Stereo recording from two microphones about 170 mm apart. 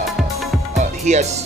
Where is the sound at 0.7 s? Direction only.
45° right (ahead or behind).